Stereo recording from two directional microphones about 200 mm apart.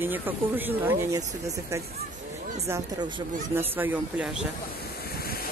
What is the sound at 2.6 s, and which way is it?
Speech, 15° right (ahead or behind).